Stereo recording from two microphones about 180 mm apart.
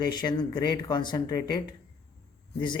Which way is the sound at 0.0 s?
25° left (ahead or behind).